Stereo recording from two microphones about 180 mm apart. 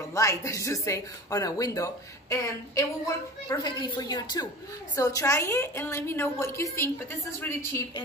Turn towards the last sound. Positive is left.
turn(degrees=10)  # may be behind; listen again after turning